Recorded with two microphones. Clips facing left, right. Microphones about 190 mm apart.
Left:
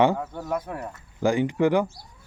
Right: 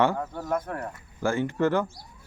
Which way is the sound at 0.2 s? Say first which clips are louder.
Even; 5° left (ahead or behind).